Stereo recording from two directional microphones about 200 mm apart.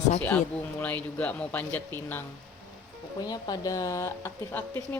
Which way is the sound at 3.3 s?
20° left (ahead or behind).